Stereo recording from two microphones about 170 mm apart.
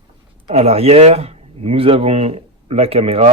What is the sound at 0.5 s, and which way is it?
Speech, 35° right (ahead or behind).